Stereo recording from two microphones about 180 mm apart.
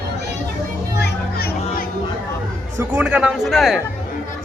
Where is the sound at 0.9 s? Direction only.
60° left (ahead or behind).